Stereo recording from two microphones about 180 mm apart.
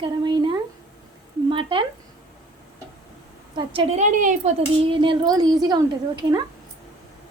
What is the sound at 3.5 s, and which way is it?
Speech, 30° right (ahead or behind).